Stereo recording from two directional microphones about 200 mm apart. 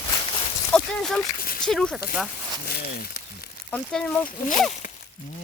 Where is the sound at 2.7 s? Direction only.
50° left (ahead or behind).